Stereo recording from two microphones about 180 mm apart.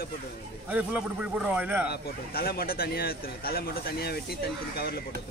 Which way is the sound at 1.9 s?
60° left (ahead or behind).